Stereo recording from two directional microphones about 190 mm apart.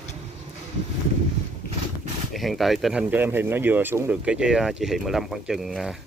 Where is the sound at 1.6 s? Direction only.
50° left (ahead or behind).